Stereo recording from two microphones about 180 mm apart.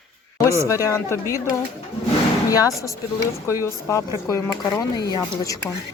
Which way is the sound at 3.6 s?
15° left (ahead or behind).